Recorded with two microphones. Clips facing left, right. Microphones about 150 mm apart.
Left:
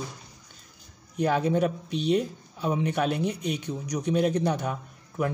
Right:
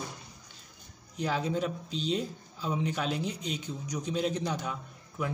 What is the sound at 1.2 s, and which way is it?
Speech, 55° left (ahead or behind).